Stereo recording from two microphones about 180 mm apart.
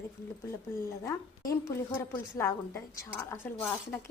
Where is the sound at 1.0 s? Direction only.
20° left (ahead or behind).